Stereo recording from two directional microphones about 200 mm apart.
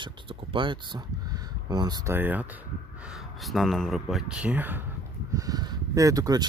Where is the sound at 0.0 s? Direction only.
25° right (ahead or behind).